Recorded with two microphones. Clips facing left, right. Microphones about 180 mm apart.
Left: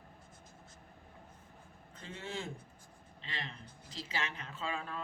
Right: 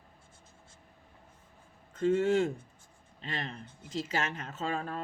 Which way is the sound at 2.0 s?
45° right (ahead or behind).